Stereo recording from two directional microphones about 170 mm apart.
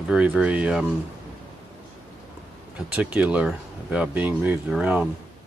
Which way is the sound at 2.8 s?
10° right (ahead or behind).